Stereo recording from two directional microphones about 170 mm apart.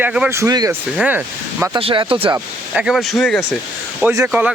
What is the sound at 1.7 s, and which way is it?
Speech, 30° right (ahead or behind).